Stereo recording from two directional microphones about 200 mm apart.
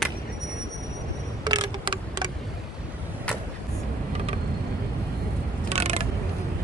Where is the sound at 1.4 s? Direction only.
20° right (ahead or behind).